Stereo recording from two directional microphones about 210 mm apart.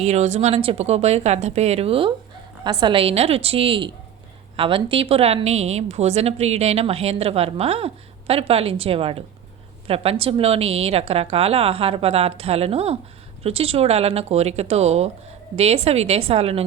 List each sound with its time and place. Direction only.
0.0 s a woman's voice: 30° right (ahead or behind)